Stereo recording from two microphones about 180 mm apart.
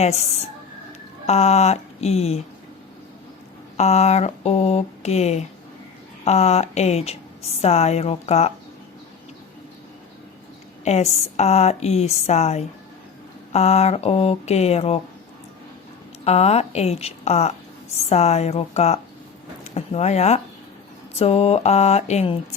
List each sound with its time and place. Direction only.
0.0 s speech: 35° left (ahead or behind)
1.3 s speech: 35° left (ahead or behind)
3.8 s speech: 35° left (ahead or behind)
10.8 s speech: 35° left (ahead or behind)
16.2 s speech: 35° left (ahead or behind)